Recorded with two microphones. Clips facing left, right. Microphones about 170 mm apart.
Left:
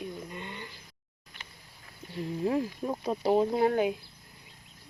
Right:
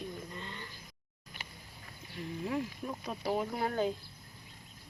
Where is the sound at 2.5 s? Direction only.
35° left (ahead or behind); by 3.9 s 15° left (ahead or behind).